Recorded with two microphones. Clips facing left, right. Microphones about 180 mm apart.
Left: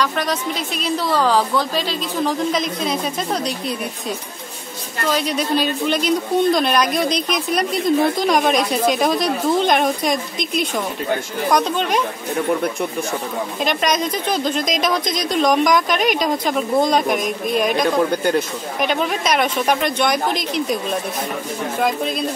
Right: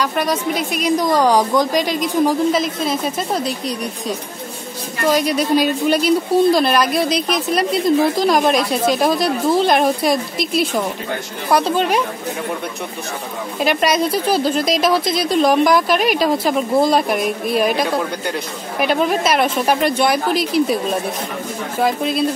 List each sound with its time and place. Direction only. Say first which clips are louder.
0.0 s a woman's voice: right 2 dB; 10° right (ahead or behind)
5.0 s a woman's voice: right 4 dB; 10° right (ahead or behind)
13.6 s a woman's voice: right 4 dB; 5° right (ahead or behind)
21.8 s speech: right 3 dB; 5° right (ahead or behind)